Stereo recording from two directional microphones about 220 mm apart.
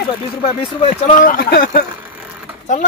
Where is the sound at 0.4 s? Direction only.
25° left (ahead or behind).